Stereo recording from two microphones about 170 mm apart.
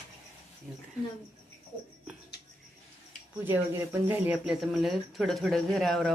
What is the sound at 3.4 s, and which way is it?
Speech, 10° right (ahead or behind).